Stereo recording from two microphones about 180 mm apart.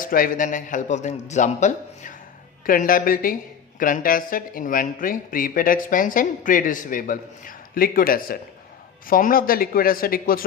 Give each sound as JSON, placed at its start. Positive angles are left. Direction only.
{"t": 0.0, "sound": "speech", "side_deg": 50}